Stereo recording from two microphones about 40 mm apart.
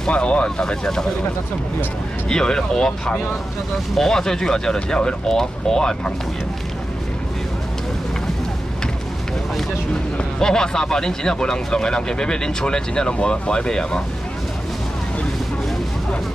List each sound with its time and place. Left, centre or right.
0.0 s speech: left
2.2 s speech: centre
10.4 s speech: centre